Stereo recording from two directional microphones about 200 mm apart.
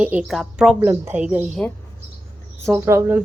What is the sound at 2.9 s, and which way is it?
Speech, 10° right (ahead or behind).